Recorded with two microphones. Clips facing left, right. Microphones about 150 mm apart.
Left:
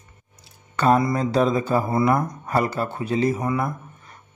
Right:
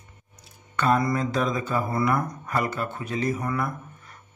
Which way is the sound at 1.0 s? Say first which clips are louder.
Left 4 dB; 30° left (ahead or behind).